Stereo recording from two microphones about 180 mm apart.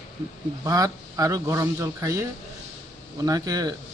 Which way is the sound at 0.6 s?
20° right (ahead or behind).